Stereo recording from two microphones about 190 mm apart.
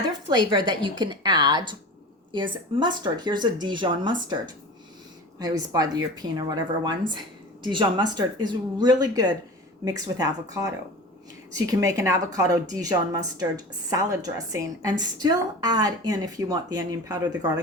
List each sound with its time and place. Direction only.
0.3 s a woman's voice: 25° right (ahead or behind)
11.5 s a woman's voice: 20° right (ahead or behind)